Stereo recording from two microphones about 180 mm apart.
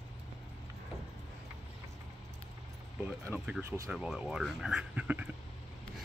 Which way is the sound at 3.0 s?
10° right (ahead or behind).